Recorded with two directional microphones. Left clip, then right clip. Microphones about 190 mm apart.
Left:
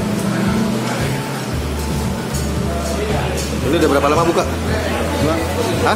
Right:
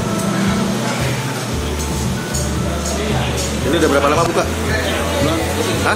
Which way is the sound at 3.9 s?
10° left (ahead or behind).